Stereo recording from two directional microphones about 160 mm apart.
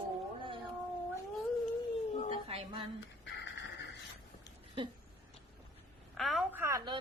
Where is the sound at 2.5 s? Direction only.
40° right (ahead or behind).